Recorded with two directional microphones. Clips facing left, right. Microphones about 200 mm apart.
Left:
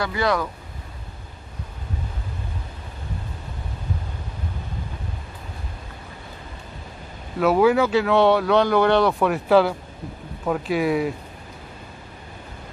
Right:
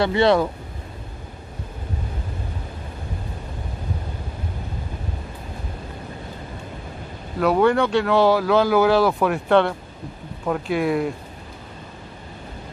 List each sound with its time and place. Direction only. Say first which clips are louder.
0.0 s speech: right 6 dB; 25° right (ahead or behind)
7.3 s speech: even; centre (ahead or behind)